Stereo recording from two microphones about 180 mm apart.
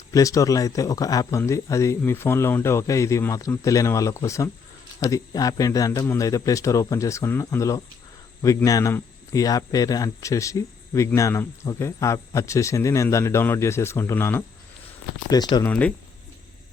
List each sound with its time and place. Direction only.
0.1 s speech: 20° left (ahead or behind)
15.6 s speech: 10° left (ahead or behind)